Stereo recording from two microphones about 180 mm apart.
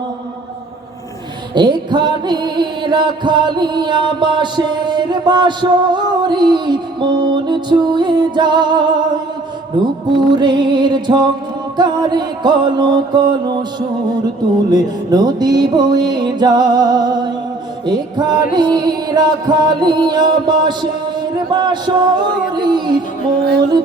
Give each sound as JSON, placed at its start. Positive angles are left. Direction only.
{"t": 1.5, "sound": "music", "side_deg": -25}
{"t": 14.7, "sound": "music", "side_deg": -20}